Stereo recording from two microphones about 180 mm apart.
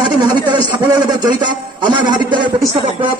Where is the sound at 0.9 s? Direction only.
25° right (ahead or behind).